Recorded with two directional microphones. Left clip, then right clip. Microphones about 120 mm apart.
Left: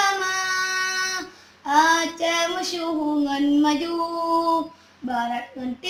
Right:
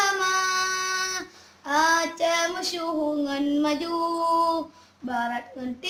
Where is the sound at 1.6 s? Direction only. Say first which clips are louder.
Left 3 dB; 20° right (ahead or behind).